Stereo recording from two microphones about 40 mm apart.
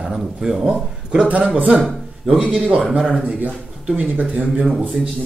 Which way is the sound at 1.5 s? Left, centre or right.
Right.